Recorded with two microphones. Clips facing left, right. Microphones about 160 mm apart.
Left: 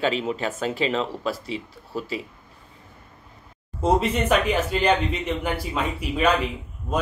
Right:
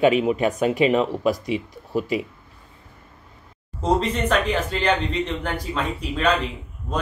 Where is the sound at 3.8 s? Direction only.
10° left (ahead or behind).